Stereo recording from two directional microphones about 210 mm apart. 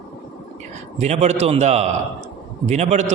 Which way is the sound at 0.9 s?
30° right (ahead or behind).